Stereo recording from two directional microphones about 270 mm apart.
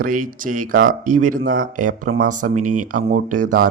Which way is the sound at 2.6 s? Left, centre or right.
Right.